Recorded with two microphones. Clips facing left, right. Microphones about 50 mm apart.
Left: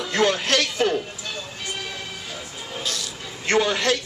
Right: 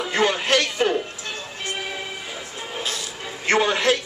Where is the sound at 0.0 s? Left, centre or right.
Centre.